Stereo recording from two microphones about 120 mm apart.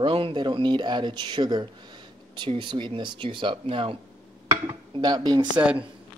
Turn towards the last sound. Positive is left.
turn(degrees=-35)  # may be behind; listen again after turning